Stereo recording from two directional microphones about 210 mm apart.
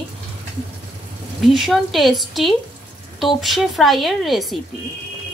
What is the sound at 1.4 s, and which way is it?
A woman's voice, centre (ahead or behind).